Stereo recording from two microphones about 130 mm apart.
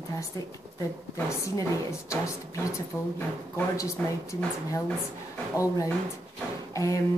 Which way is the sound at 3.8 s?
25° left (ahead or behind).